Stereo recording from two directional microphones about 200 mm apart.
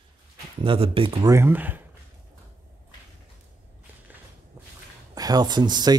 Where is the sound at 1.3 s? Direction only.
10° right (ahead or behind).